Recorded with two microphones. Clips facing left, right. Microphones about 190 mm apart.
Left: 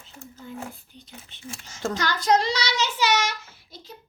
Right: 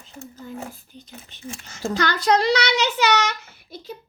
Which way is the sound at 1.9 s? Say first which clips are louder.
Right 2 dB; 65° right (ahead or behind).